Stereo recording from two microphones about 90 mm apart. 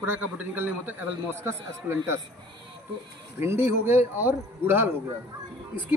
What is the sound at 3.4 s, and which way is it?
A man's voice, 25° right (ahead or behind).